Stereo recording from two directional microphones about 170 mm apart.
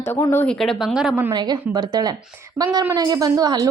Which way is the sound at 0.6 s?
Centre (ahead or behind).